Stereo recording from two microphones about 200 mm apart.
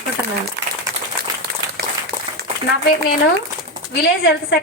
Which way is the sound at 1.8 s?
50° right (ahead or behind).